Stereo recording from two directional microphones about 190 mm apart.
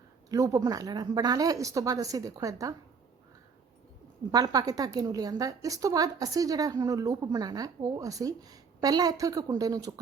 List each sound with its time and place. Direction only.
0.3 s a woman's voice: 15° right (ahead or behind)
4.3 s a woman's voice: 20° right (ahead or behind)